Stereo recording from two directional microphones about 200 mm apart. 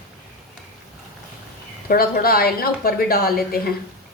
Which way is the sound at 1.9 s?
50° left (ahead or behind).